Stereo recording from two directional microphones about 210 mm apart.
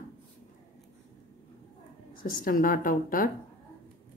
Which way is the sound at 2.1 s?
45° left (ahead or behind).